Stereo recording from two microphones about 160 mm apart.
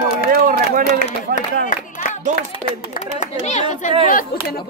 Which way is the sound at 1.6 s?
50° left (ahead or behind).